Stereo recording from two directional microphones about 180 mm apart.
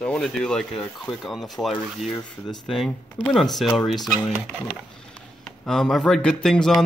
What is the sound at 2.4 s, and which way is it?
Speech, 25° left (ahead or behind).